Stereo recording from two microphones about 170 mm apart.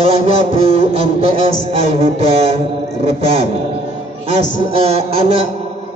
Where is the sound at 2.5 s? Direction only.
35° right (ahead or behind).